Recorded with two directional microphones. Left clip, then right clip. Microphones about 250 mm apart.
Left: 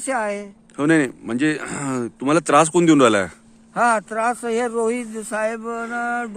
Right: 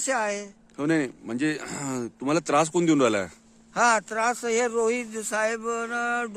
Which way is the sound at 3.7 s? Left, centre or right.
Centre.